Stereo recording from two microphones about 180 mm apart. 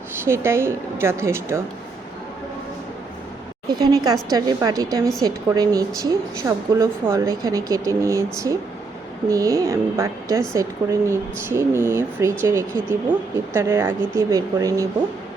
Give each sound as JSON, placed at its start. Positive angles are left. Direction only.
{"t": 0.3, "sound": "speech", "side_deg": -15}
{"t": 3.7, "sound": "speech", "side_deg": -25}